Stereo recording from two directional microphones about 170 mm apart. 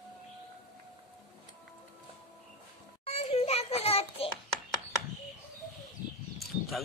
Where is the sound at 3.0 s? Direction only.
35° left (ahead or behind).